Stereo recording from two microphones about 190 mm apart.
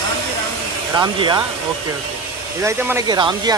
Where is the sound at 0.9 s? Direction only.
25° right (ahead or behind).